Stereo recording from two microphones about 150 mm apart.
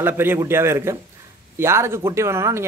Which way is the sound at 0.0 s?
15° right (ahead or behind).